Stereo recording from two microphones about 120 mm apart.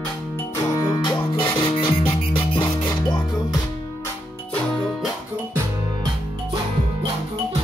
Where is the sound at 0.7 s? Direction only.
30° left (ahead or behind).